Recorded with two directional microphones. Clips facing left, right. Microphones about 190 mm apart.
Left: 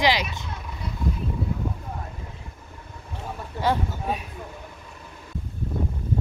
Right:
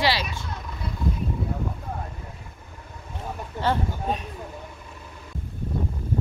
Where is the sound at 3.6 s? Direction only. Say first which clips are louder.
Left 1 dB; 10° left (ahead or behind).